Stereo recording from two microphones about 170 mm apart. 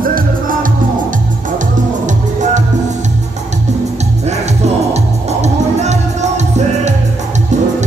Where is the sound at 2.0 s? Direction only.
45° right (ahead or behind).